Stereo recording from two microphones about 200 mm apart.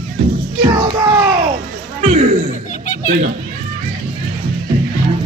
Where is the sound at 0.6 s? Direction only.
25° right (ahead or behind).